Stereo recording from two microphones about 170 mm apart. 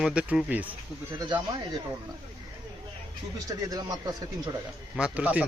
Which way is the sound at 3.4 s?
20° right (ahead or behind).